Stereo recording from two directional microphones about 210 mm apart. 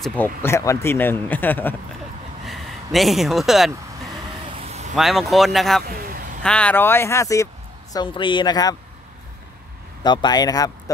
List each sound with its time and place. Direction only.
0.0 s speech: 5° left (ahead or behind)
4.6 s vehicle: 30° right (ahead or behind)
4.9 s speech: centre (ahead or behind)
5.9 s vehicle: 45° right (ahead or behind)
6.4 s speech: 5° left (ahead or behind)
10.0 s speech: 20° left (ahead or behind)